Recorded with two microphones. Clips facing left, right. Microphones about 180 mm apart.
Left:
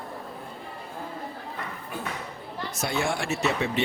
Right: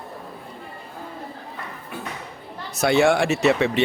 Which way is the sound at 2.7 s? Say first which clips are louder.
Right 11 dB; 75° right (ahead or behind).